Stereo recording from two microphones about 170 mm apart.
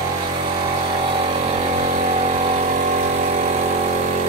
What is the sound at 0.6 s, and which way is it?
Vehicle, 30° right (ahead or behind).